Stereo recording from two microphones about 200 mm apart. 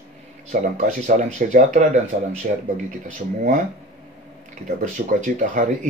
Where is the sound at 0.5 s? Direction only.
40° right (ahead or behind).